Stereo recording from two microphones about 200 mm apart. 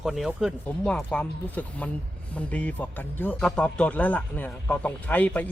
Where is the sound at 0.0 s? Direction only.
Centre (ahead or behind).